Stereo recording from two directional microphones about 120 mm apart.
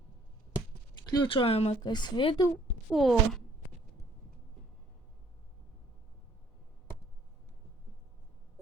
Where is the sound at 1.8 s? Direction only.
35° left (ahead or behind).